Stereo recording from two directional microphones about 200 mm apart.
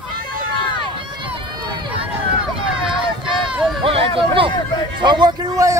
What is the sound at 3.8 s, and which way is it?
A man's voice, 25° right (ahead or behind).